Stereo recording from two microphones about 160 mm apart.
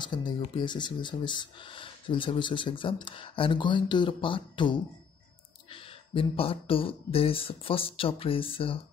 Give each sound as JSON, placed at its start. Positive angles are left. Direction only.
{"t": 0.0, "sound": "speech", "side_deg": 30}